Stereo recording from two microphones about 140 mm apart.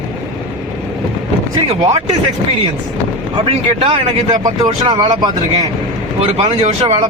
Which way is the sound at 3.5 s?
40° right (ahead or behind).